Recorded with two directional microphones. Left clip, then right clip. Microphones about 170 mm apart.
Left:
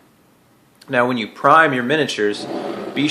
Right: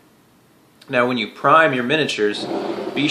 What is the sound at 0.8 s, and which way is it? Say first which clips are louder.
Speech: left 1 dB; 15° left (ahead or behind).